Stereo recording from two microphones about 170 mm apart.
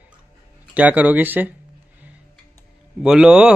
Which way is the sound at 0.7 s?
10° right (ahead or behind).